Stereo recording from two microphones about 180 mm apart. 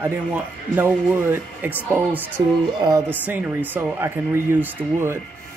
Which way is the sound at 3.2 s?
10° right (ahead or behind).